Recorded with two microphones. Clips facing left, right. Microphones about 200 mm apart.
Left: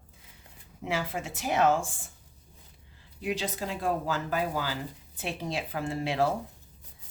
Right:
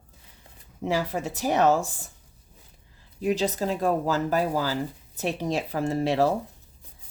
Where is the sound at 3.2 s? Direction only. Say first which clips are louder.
Right 7 dB; 40° right (ahead or behind).